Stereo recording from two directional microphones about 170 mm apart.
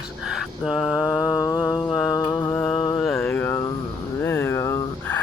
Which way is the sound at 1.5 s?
25° left (ahead or behind).